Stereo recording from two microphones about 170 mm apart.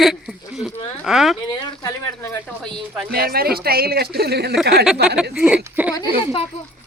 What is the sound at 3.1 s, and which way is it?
Speech, 65° right (ahead or behind).